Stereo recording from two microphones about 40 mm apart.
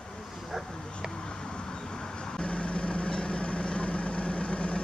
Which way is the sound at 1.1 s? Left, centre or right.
Centre.